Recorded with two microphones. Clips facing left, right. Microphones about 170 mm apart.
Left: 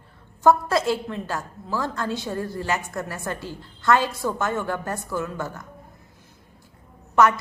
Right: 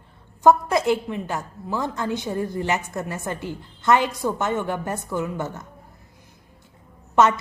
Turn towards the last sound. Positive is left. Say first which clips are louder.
# right 1 dB
turn(degrees=-20)  # may be behind; listen again after turning